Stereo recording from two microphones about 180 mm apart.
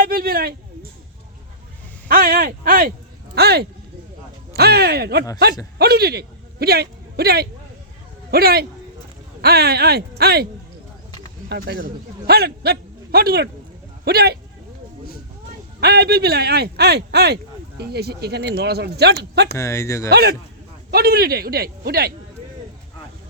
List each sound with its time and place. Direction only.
0.0 s a sound: 55° right (ahead or behind)
2.0 s speech: 55° right (ahead or behind)
11.4 s a man's voice: 65° right (ahead or behind)
15.8 s speech: 60° right (ahead or behind)
19.5 s speech: 15° left (ahead or behind)
20.1 s speech: 60° right (ahead or behind)